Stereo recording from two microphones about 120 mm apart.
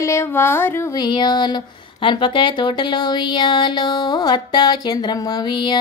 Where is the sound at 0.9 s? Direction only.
35° left (ahead or behind).